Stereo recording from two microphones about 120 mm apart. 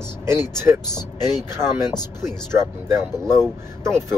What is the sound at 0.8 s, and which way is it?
Speech, 35° left (ahead or behind).